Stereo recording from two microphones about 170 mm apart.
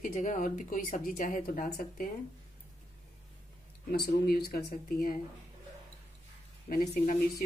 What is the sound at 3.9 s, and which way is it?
Speech, 65° left (ahead or behind).